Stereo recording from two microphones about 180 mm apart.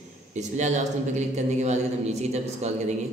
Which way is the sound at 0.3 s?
40° right (ahead or behind).